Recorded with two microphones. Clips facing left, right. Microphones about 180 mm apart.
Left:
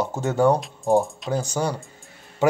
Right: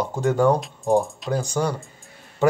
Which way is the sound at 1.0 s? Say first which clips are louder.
Even; centre (ahead or behind).